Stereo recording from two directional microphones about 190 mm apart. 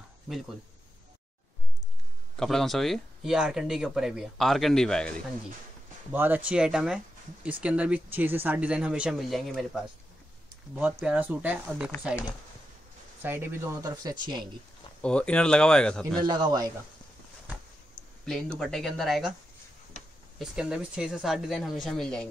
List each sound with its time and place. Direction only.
2.3 s speech: centre (ahead or behind)
6.1 s speech: 10° right (ahead or behind)
11.0 s speech: 5° right (ahead or behind)
13.2 s speech: 10° right (ahead or behind)
15.0 s speech: 5° left (ahead or behind)
16.2 s a man's voice: 20° right (ahead or behind)
18.2 s speech: 5° left (ahead or behind)
20.3 s speech: centre (ahead or behind)